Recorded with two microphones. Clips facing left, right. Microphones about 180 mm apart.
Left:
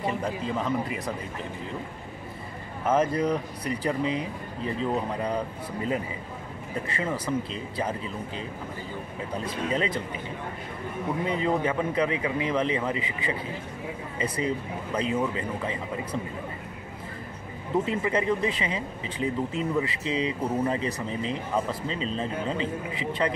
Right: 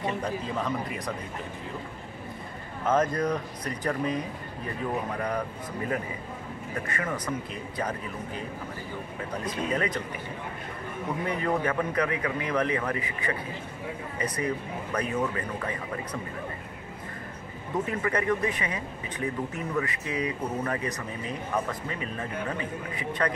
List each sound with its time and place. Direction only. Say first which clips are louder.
0.0 s a man's voice: left 1 dB; 5° left (ahead or behind)
2.8 s speech: left 1 dB; 10° left (ahead or behind)
7.0 s speech: left 5 dB; 25° left (ahead or behind)
9.4 s speech: left 1 dB; 30° left (ahead or behind)
11.2 s speech: left 1 dB; 25° left (ahead or behind)
17.8 s speech: right 1 dB; 25° left (ahead or behind)